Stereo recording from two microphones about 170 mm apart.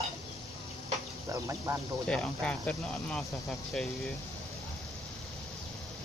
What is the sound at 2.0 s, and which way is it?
Speech, 5° left (ahead or behind).